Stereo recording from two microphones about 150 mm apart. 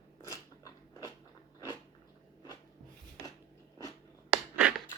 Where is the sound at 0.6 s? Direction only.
25° left (ahead or behind).